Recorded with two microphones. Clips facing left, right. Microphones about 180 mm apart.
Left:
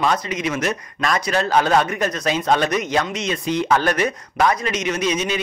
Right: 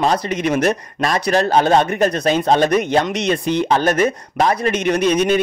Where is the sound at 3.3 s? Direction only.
60° right (ahead or behind).